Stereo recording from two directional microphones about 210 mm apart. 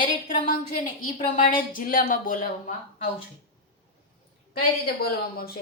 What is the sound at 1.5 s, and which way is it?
Speech, 40° left (ahead or behind).